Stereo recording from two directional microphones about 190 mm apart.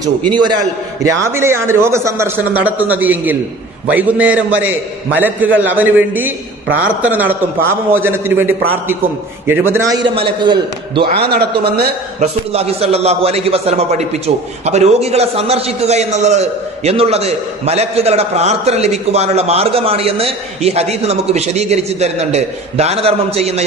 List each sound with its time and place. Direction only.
0.3 s a man's voice: 25° right (ahead or behind)
9.7 s a man's voice: 15° right (ahead or behind)
10.0 s a man's voice: 25° right (ahead or behind)
11.1 s a man's voice: 55° right (ahead or behind)
12.2 s a man's voice: 30° right (ahead or behind)